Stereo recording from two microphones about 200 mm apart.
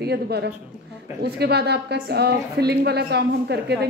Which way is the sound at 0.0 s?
55° right (ahead or behind).